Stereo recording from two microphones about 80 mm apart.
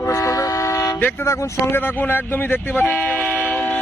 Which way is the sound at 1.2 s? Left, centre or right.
Left.